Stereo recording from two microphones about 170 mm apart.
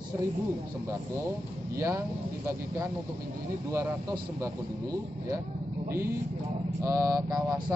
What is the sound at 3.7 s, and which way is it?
Speech, 15° right (ahead or behind).